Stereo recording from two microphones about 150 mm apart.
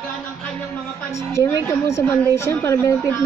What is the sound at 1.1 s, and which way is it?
A woman's voice, 15° left (ahead or behind).